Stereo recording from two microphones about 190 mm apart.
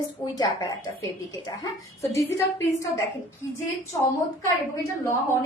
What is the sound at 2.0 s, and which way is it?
Speech, 15° left (ahead or behind).